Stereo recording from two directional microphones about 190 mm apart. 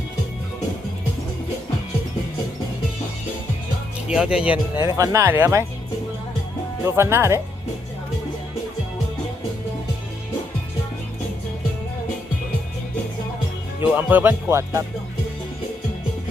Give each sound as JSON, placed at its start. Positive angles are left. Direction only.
{"t": 4.1, "sound": "speech", "side_deg": -5}
{"t": 4.8, "sound": "speech", "side_deg": -15}
{"t": 6.8, "sound": "speech", "side_deg": -15}
{"t": 13.9, "sound": "speech", "side_deg": -10}